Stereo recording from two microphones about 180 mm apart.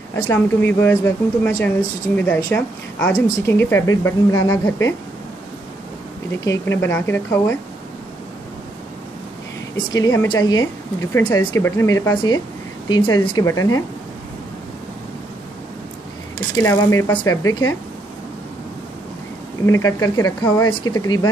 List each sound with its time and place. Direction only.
0.1 s a woman's voice: 15° left (ahead or behind)
6.3 s a woman's voice: 15° left (ahead or behind)
9.8 s speech: 20° left (ahead or behind)
16.6 s speech: 15° left (ahead or behind)
19.6 s speech: 20° left (ahead or behind)